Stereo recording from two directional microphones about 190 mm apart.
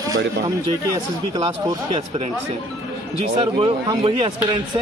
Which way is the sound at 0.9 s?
20° right (ahead or behind).